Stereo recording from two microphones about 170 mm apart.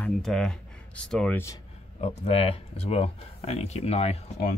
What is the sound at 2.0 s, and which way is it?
Speech, 35° left (ahead or behind).